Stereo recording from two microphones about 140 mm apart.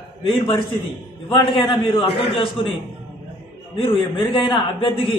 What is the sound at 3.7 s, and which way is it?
A man's voice, 40° left (ahead or behind).